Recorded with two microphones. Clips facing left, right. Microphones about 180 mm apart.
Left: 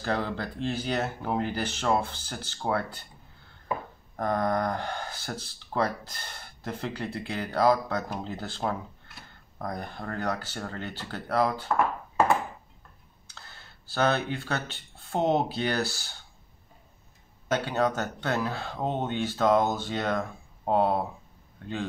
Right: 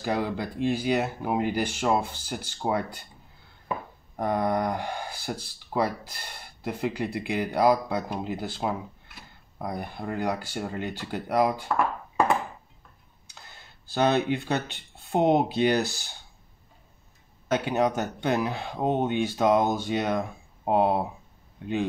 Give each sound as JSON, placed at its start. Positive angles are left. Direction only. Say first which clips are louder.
{"t": 0.0, "sound": "speech", "louder": "right 2 dB", "side_deg": -10}
{"t": 4.2, "sound": "speech", "louder": "right 1 dB", "side_deg": -10}
{"t": 13.3, "sound": "speech", "louder": "even", "side_deg": -15}
{"t": 17.5, "sound": "speech", "louder": "right 2 dB", "side_deg": -15}